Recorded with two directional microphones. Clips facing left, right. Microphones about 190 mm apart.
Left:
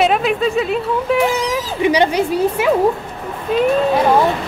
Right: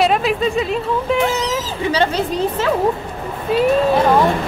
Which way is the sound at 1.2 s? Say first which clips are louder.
Left 2 dB; 10° left (ahead or behind).